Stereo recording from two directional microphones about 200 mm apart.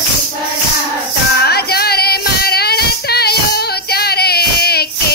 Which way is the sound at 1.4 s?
50° left (ahead or behind).